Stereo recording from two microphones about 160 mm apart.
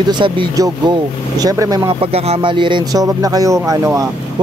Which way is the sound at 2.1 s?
40° right (ahead or behind).